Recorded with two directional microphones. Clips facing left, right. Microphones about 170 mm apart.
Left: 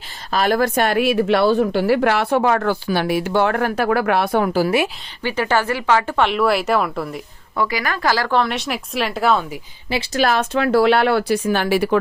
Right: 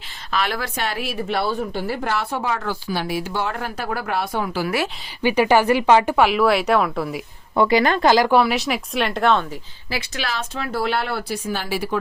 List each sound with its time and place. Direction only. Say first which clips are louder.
0.3 s a woman's voice: left 7 dB; 40° left (ahead or behind); by 4.5 s 60° left (ahead or behind)
5.2 s speech: right 3 dB; 15° right (ahead or behind)
6.1 s speech: right 1 dB; 5° right (ahead or behind)
7.5 s speech: right 5 dB; 25° right (ahead or behind); by 9.6 s 5° left (ahead or behind)
10.2 s speech: left 12 dB; 50° left (ahead or behind)
10.5 s speech: left 8 dB; 75° left (ahead or behind)